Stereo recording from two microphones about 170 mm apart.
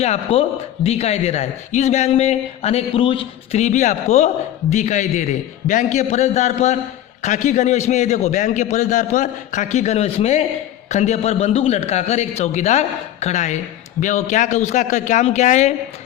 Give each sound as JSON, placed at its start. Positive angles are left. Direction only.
{"t": 0.0, "sound": "a man's voice", "side_deg": 40}